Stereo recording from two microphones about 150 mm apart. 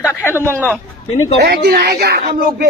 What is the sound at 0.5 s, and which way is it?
Speech, 10° left (ahead or behind).